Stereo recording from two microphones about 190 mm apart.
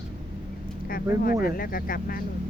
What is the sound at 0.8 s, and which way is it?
Speech, 50° left (ahead or behind).